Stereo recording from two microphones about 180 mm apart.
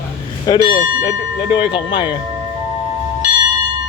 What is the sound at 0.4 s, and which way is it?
Speech, 25° left (ahead or behind).